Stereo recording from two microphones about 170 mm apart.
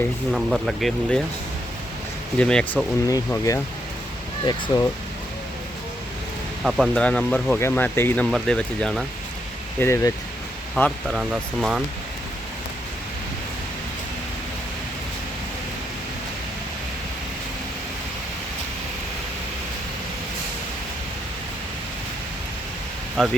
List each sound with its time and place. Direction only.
0.3 s speech: centre (ahead or behind)
2.4 s speech: 5° left (ahead or behind)
3.1 s speech: 20° left (ahead or behind)
6.7 s speech: centre (ahead or behind)
9.8 s speech: 15° left (ahead or behind)
10.8 s speech: 5° left (ahead or behind)
23.1 s speech: centre (ahead or behind)